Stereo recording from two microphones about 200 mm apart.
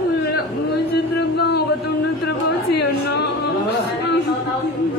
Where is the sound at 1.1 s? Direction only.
55° left (ahead or behind).